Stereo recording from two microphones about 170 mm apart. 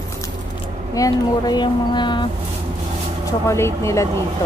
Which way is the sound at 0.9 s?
20° left (ahead or behind).